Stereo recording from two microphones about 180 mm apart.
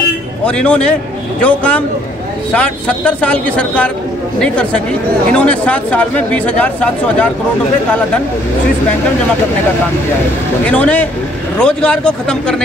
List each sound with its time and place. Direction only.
0.5 s speech: 5° left (ahead or behind)
10.6 s speech: 5° left (ahead or behind)